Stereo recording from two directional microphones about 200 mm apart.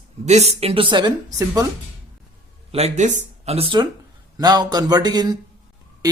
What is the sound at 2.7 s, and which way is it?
Speech, 30° right (ahead or behind).